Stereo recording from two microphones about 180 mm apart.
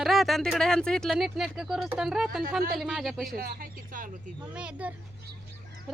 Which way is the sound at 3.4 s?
55° right (ahead or behind).